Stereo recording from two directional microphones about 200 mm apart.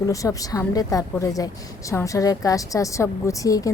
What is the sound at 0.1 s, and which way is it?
Speech, 15° left (ahead or behind).